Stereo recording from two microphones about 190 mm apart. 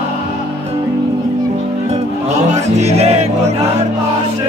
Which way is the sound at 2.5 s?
35° right (ahead or behind).